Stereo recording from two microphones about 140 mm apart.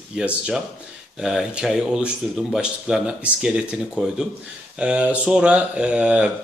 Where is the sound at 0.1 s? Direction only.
10° right (ahead or behind).